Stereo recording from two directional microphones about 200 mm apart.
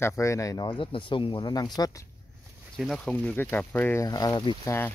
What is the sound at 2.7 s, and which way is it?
Speech, centre (ahead or behind).